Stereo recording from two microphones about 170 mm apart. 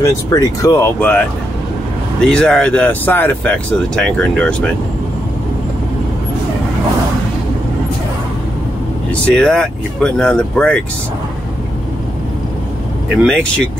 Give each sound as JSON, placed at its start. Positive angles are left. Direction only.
{"t": 0.0, "sound": "speech", "side_deg": 20}
{"t": 2.2, "sound": "speech", "side_deg": 5}
{"t": 9.1, "sound": "speech", "side_deg": 5}
{"t": 13.2, "sound": "speech", "side_deg": 5}